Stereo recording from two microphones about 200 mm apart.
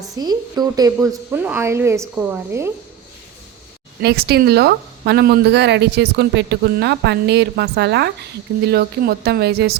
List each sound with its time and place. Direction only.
0.2 s speech: 20° right (ahead or behind)
4.0 s a woman's voice: 55° right (ahead or behind)